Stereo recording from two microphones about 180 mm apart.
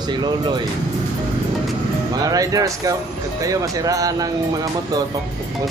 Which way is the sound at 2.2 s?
20° right (ahead or behind).